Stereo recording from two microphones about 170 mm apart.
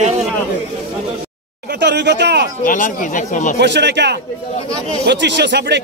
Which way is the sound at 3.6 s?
90° right.